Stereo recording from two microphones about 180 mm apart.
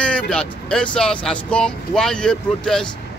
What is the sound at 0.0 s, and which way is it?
Speech, 5° left (ahead or behind).